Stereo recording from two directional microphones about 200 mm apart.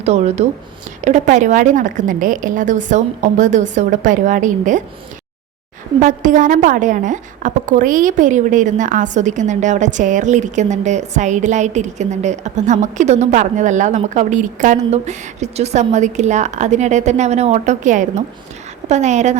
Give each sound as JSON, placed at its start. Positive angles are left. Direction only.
{"t": 0.0, "sound": "a woman's voice", "side_deg": -35}
{"t": 6.0, "sound": "a woman's voice", "side_deg": -40}